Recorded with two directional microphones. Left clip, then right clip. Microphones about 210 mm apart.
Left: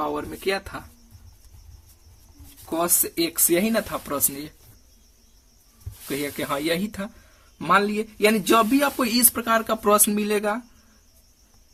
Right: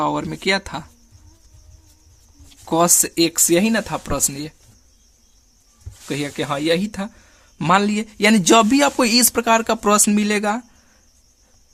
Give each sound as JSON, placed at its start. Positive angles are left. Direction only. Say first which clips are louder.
{"t": 0.1, "sound": "speech", "louder": "right 6 dB", "side_deg": -50}
{"t": 2.6, "sound": "speech", "louder": "right 8 dB", "side_deg": -50}
{"t": 6.1, "sound": "speech", "louder": "right 3 dB", "side_deg": -30}
{"t": 7.6, "sound": "speech", "louder": "right 3 dB", "side_deg": -45}